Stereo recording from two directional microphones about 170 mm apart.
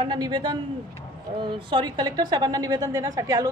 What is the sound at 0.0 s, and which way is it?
Speech, 25° right (ahead or behind).